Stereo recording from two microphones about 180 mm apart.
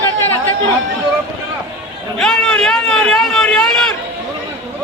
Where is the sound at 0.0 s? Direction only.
15° left (ahead or behind).